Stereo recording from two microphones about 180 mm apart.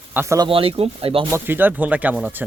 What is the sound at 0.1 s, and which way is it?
Speech, 15° right (ahead or behind).